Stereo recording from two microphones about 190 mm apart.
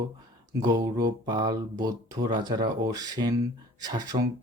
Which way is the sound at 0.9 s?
20° right (ahead or behind).